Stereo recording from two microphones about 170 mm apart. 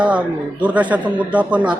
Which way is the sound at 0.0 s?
10° right (ahead or behind).